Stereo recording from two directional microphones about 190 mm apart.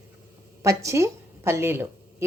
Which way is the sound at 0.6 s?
15° right (ahead or behind).